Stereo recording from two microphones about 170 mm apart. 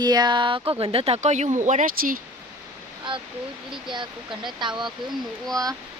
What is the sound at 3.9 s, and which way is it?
Speech, 25° right (ahead or behind).